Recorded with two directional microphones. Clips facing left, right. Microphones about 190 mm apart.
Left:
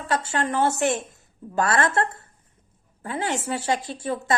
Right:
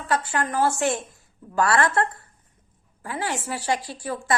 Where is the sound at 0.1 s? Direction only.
25° left (ahead or behind).